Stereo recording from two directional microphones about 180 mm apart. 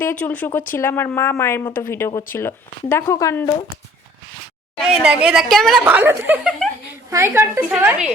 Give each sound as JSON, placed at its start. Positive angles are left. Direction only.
{"t": 0.0, "sound": "speech", "side_deg": 10}
{"t": 4.8, "sound": "a woman's voice", "side_deg": -5}
{"t": 5.8, "sound": "speech", "side_deg": -10}